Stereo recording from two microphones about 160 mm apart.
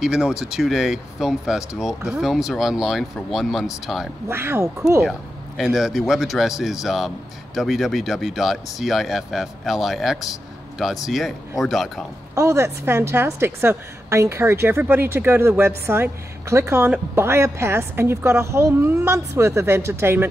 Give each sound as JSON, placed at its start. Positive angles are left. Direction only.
{"t": 0.0, "sound": "speech", "side_deg": -5}
{"t": 4.3, "sound": "a woman's voice", "side_deg": -15}
{"t": 5.6, "sound": "speech", "side_deg": 0}
{"t": 12.4, "sound": "a woman's voice", "side_deg": -15}